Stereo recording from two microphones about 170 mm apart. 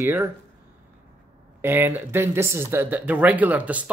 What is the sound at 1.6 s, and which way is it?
Speech, 10° right (ahead or behind).